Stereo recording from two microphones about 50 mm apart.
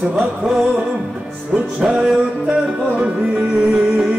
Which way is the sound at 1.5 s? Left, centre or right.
Centre.